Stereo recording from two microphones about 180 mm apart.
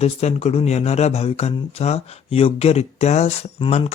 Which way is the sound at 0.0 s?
35° left (ahead or behind).